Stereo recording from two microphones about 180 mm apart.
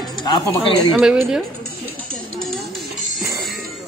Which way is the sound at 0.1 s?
25° left (ahead or behind).